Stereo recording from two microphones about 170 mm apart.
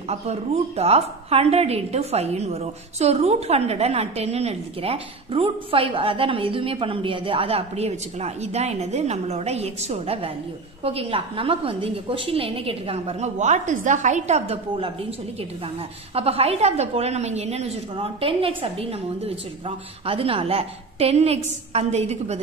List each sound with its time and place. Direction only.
0.1 s a woman's voice: 40° right (ahead or behind)
16.2 s a woman's voice: 35° right (ahead or behind)